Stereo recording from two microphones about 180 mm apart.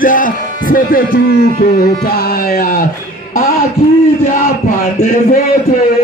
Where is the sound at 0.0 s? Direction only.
50° left (ahead or behind).